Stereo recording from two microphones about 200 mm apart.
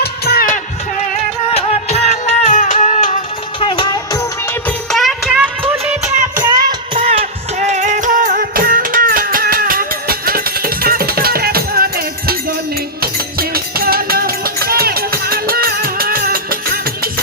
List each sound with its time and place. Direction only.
0.0 s music: 50° left (ahead or behind)
1.5 s music: 30° left (ahead or behind)
3.6 s music: 25° left (ahead or behind)
4.9 s music of bollywood: centre (ahead or behind)
6.4 s music: 20° right (ahead or behind)
7.0 s music: 30° right (ahead or behind); by 17.1 s 50° right (ahead or behind)